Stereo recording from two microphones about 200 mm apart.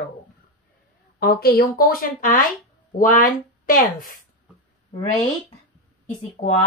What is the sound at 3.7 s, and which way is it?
Speech, 45° left (ahead or behind).